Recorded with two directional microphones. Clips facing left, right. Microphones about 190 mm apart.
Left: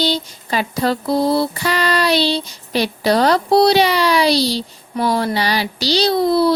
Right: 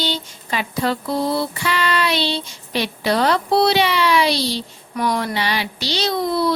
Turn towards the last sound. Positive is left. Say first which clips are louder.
# left 5 dB
turn(degrees=35)  # may be behind; listen again after turning